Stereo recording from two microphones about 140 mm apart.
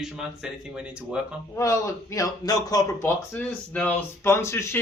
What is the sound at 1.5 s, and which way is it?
A man's voice, 20° left (ahead or behind).